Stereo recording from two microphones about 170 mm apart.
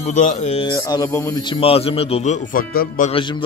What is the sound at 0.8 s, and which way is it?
A man's voice, 20° left (ahead or behind).